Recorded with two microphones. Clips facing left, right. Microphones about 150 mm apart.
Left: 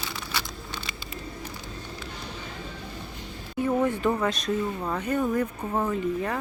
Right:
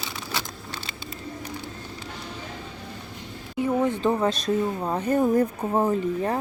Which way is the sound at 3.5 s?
20° right (ahead or behind).